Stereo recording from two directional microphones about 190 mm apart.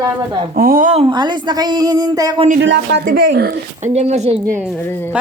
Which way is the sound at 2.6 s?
65° right (ahead or behind).